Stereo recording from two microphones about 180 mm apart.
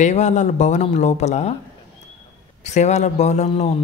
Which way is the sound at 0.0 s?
40° left (ahead or behind).